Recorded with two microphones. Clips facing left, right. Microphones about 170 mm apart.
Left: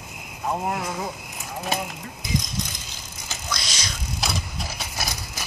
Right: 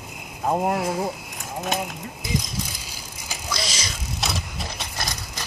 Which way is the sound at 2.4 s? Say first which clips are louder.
Even; 10° right (ahead or behind).